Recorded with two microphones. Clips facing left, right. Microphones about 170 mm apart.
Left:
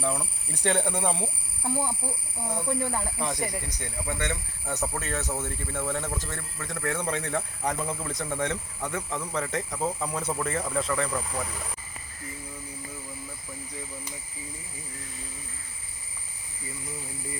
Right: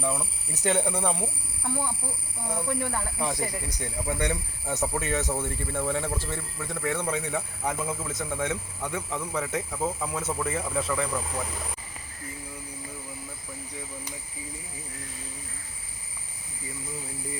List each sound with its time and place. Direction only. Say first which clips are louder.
0.0 s speech: even; 5° right (ahead or behind)
1.6 s speech: left 2 dB; 15° left (ahead or behind)
3.2 s a man's voice: right 1 dB; 5° right (ahead or behind)